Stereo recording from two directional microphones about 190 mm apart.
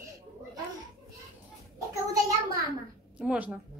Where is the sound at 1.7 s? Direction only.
20° right (ahead or behind).